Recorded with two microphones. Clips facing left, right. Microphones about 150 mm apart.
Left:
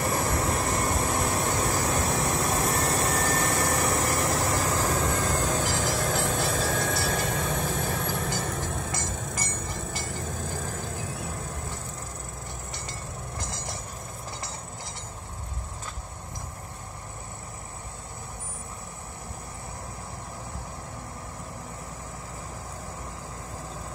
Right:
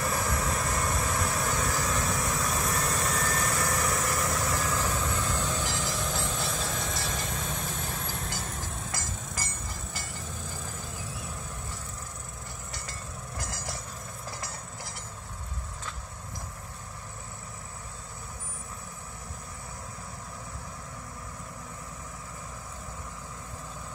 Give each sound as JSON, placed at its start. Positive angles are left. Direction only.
{"t": 0.0, "sound": "vehicle", "side_deg": 30}
{"t": 9.0, "sound": "train", "side_deg": 60}